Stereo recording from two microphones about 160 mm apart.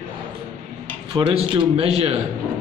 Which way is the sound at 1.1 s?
30° right (ahead or behind).